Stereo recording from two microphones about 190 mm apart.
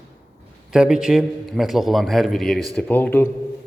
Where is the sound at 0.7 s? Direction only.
5° right (ahead or behind).